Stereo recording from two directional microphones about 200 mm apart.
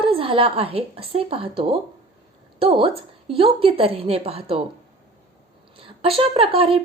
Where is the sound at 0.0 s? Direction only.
25° right (ahead or behind).